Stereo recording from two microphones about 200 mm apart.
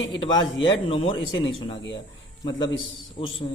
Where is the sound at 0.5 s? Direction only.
70° left (ahead or behind).